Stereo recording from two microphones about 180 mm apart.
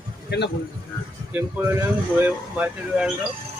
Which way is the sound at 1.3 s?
10° right (ahead or behind).